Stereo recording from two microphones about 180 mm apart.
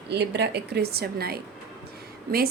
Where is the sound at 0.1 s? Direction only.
70° right (ahead or behind).